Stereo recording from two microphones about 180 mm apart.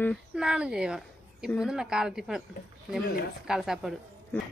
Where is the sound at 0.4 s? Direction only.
5° right (ahead or behind).